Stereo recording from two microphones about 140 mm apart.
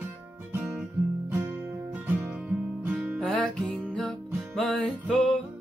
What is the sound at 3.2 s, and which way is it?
Music, 5° left (ahead or behind).